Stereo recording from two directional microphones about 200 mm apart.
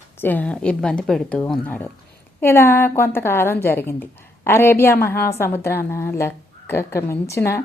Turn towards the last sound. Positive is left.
turn(degrees=15)  # may be behind; listen again after turning